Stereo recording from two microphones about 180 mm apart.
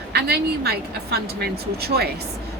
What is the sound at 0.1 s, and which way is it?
A woman's voice, 65° right (ahead or behind).